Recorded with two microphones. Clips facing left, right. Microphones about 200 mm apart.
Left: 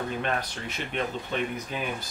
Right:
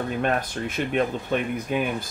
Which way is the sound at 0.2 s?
50° right (ahead or behind).